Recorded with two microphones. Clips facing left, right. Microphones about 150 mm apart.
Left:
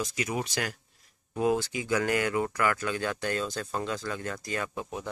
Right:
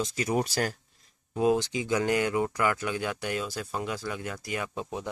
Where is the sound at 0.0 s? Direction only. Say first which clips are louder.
Right 4 dB; 35° right (ahead or behind).